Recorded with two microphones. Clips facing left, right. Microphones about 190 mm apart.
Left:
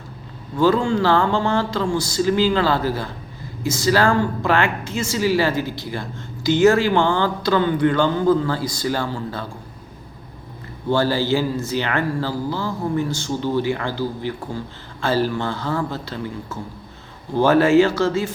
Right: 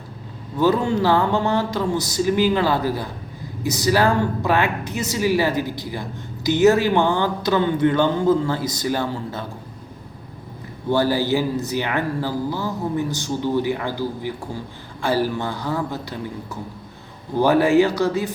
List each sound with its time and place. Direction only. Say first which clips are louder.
0.5 s speech: left 1 dB; 20° right (ahead or behind)
10.8 s speech: even; 15° right (ahead or behind)